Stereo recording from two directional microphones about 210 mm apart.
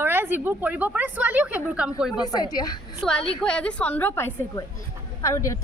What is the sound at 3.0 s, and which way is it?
A woman's voice, 5° left (ahead or behind).